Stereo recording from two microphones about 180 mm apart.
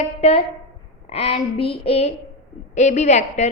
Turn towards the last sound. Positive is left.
turn(degrees=40)  # may be behind; listen again after turning